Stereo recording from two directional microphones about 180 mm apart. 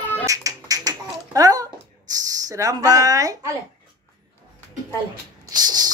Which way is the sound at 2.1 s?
20° right (ahead or behind).